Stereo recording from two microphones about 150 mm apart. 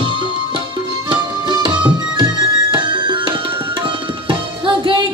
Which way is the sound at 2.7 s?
30° right (ahead or behind).